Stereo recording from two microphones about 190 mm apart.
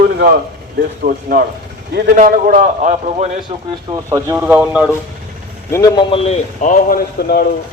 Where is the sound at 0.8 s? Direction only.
50° right (ahead or behind).